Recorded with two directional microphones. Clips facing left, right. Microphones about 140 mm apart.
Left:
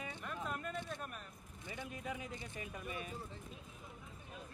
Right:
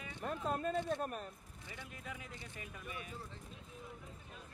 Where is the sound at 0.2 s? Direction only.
35° right (ahead or behind).